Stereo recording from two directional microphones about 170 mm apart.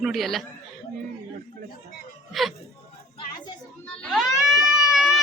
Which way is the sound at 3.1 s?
30° left (ahead or behind).